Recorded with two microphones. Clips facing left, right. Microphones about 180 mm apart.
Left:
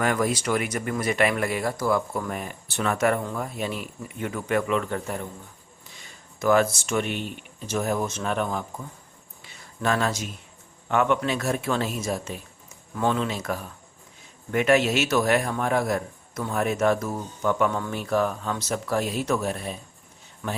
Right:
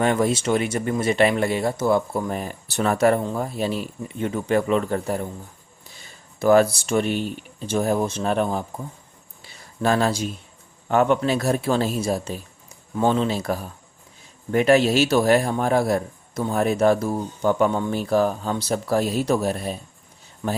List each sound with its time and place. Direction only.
0.0 s speech: 25° right (ahead or behind)
9.4 s a sound: 35° right (ahead or behind)
10.8 s a man's voice: 35° right (ahead or behind)